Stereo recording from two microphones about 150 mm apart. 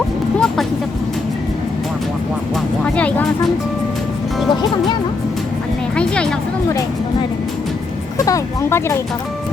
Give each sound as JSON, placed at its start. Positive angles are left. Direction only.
{"t": 0.3, "sound": "vehicle", "side_deg": 5}
{"t": 2.8, "sound": "speech", "side_deg": 10}
{"t": 6.0, "sound": "speech", "side_deg": 5}
{"t": 8.2, "sound": "speech", "side_deg": 20}